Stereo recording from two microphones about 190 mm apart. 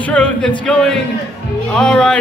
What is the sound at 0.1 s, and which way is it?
Speech, 5° left (ahead or behind).